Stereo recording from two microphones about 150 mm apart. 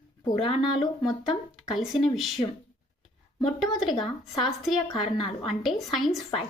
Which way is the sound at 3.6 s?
Centre (ahead or behind).